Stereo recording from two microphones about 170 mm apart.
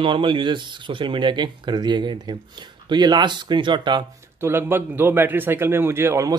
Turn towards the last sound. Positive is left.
turn(degrees=-15)  # may be behind; listen again after turning